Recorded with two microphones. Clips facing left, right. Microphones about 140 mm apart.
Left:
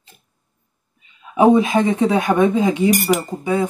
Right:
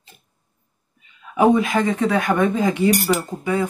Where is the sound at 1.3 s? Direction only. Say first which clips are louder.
Left 3 dB; 25° left (ahead or behind).